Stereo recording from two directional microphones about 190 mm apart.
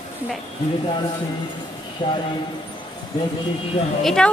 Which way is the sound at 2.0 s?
25° left (ahead or behind).